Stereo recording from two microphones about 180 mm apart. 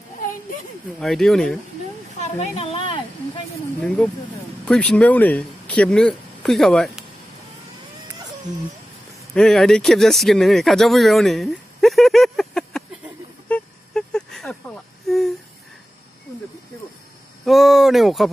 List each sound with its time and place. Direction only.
0.9 s speech: centre (ahead or behind)
2.2 s speech: 35° left (ahead or behind)
3.8 s speech: 5° left (ahead or behind)
9.3 s speech: centre (ahead or behind)
13.5 s a sound: 5° left (ahead or behind)
15.0 s speech: centre (ahead or behind)
17.5 s speech: centre (ahead or behind)